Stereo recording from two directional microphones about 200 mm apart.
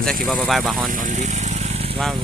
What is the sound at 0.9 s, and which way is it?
Speech, 40° right (ahead or behind).